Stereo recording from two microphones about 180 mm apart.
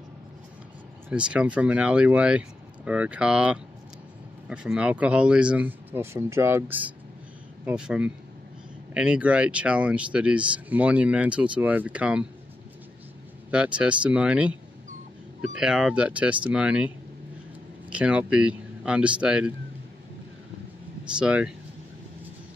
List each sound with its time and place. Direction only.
1.0 s speech: 5° right (ahead or behind)
13.5 s speech: 5° right (ahead or behind)
15.5 s speech: 5° right (ahead or behind)
17.9 s speech: 5° right (ahead or behind)
21.2 s speech: 5° right (ahead or behind)